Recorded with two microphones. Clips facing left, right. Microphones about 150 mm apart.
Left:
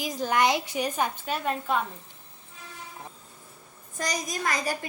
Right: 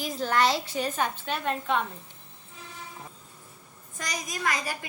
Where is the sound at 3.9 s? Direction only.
35° left (ahead or behind).